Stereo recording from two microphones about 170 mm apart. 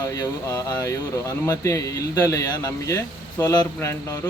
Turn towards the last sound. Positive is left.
turn(degrees=20)  # may be behind; listen again after turning